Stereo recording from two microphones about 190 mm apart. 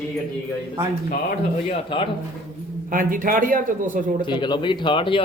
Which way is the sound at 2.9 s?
45° right (ahead or behind).